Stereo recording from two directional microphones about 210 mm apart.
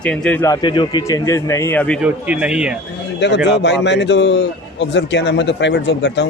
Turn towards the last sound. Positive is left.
turn(degrees=55)  # may be behind; listen again after turning